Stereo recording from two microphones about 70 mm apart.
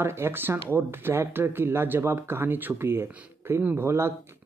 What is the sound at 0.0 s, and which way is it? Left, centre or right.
Speech, right.